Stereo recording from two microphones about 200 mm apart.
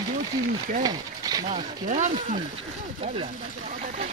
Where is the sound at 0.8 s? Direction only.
20° right (ahead or behind).